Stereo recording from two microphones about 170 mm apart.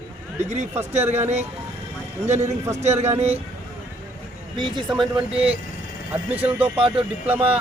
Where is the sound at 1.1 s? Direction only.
40° right (ahead or behind).